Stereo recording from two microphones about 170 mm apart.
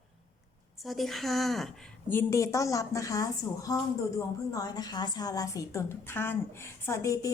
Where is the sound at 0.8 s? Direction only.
Centre (ahead or behind).